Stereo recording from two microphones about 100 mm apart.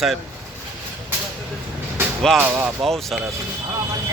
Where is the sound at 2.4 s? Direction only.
15° right (ahead or behind).